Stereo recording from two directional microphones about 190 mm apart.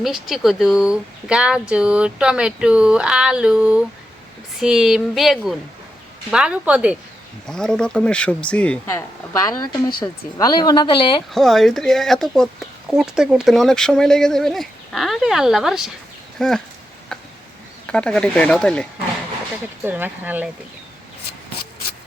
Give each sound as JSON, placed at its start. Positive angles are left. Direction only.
{"t": 0.0, "sound": "a woman's voice", "side_deg": 0}
{"t": 10.0, "sound": "speech", "side_deg": 20}
{"t": 11.3, "sound": "a woman's voice", "side_deg": 0}
{"t": 17.8, "sound": "a woman's voice", "side_deg": 5}
{"t": 19.8, "sound": "speech", "side_deg": -10}